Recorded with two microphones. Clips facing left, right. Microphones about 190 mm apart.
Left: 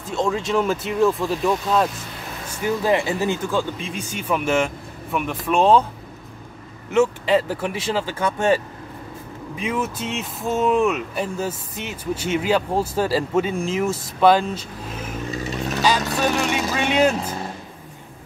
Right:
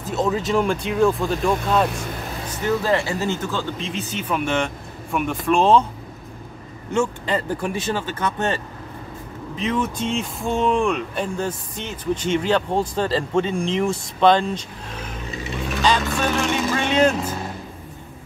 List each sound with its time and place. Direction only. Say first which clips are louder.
0.0 s speech: right 1 dB; 5° right (ahead or behind)
2.6 s speech: left 1 dB; 15° left (ahead or behind)
7.0 s speech: left 5 dB; 5° left (ahead or behind)
15.4 s vehicle: right 1 dB; 40° left (ahead or behind)
16.2 s speech: even; 10° left (ahead or behind)